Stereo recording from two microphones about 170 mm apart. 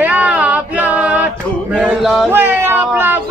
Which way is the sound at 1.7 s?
Centre (ahead or behind).